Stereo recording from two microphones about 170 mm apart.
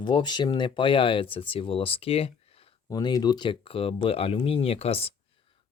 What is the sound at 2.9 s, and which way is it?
Speech, 20° left (ahead or behind).